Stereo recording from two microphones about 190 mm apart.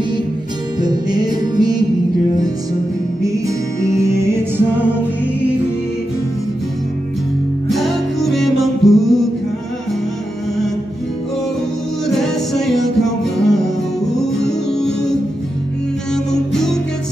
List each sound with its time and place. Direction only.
0.7 s music: 20° right (ahead or behind)
3.3 s music: 15° right (ahead or behind)
7.7 s music: centre (ahead or behind)
12.1 s music: centre (ahead or behind)